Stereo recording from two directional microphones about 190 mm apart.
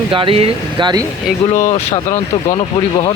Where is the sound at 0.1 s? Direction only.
25° right (ahead or behind).